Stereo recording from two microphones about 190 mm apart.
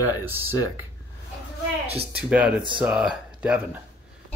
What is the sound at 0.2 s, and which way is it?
Speech, 10° right (ahead or behind).